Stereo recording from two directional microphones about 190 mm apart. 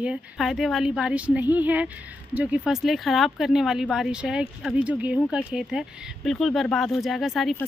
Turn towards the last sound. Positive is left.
turn(degrees=0)  # may be behind; listen again after turning